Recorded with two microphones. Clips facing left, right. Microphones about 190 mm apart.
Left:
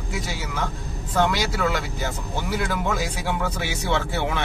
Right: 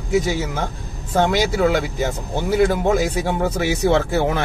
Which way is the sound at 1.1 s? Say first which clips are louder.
Right 5 dB; 50° right (ahead or behind).